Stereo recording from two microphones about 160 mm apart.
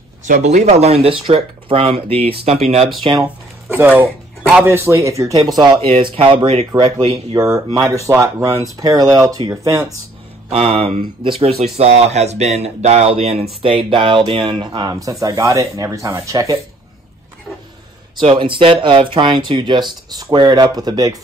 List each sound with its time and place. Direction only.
0.2 s speech: 50° right (ahead or behind)
3.0 s speech: 30° right (ahead or behind)
3.7 s speech: 10° right (ahead or behind); by 7.4 s 30° right (ahead or behind)
7.4 s speech: 20° right (ahead or behind)
10.5 s speech: 40° right (ahead or behind); by 16.5 s 20° right (ahead or behind)
18.1 s speech: 35° right (ahead or behind)